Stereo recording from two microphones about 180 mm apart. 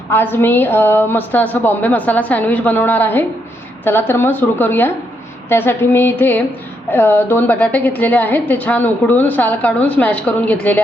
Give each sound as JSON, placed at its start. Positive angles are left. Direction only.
{"t": 0.1, "sound": "a woman's voice", "side_deg": 10}